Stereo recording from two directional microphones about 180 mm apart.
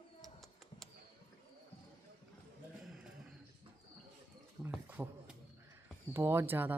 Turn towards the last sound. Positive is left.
turn(degrees=-10)  # may be behind; listen again after turning